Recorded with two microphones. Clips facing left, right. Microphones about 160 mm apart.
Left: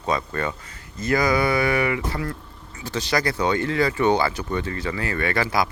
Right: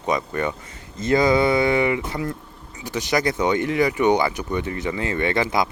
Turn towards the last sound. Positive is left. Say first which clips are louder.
# right 2 dB
turn(degrees=-20)  # may be behind; listen again after turning